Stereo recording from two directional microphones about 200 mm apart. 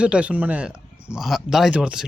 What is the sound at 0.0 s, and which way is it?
Speech, 5° right (ahead or behind).